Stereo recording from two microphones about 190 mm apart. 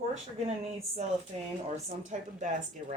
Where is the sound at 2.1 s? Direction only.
35° right (ahead or behind).